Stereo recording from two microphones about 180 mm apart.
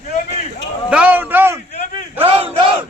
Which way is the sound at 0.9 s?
5° right (ahead or behind).